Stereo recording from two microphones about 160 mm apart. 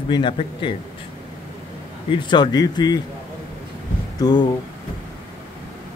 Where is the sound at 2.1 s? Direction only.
25° left (ahead or behind).